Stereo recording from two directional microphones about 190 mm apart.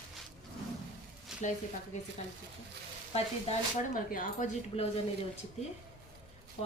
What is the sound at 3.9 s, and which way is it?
Speech, 45° left (ahead or behind).